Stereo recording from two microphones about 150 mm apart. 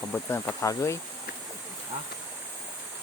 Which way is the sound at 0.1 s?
15° left (ahead or behind).